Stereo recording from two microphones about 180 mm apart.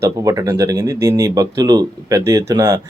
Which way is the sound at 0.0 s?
15° right (ahead or behind).